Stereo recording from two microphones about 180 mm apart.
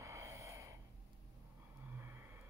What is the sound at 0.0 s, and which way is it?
Snort, 15° right (ahead or behind).